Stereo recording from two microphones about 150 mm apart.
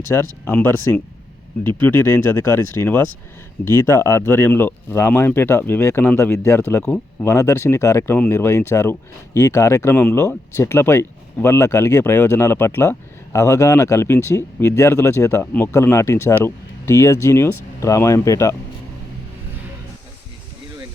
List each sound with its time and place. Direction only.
0.1 s speech: 15° left (ahead or behind)